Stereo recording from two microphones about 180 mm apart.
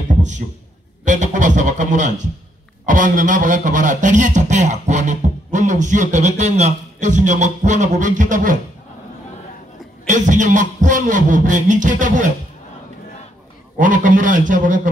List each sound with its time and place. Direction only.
1.0 s speech: 45° right (ahead or behind)
10.0 s speech: 45° right (ahead or behind)
13.7 s speech: 45° right (ahead or behind)